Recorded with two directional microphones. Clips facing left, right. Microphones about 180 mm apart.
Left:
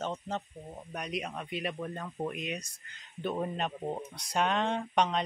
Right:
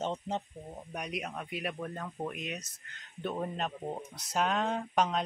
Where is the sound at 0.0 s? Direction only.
20° right (ahead or behind).